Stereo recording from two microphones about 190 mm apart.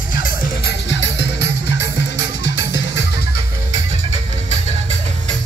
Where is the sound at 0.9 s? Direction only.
70° left (ahead or behind).